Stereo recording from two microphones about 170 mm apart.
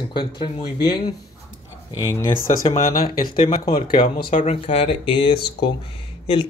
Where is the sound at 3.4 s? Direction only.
55° left (ahead or behind).